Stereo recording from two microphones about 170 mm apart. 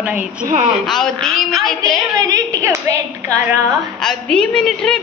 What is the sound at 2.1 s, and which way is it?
Speech, 20° right (ahead or behind).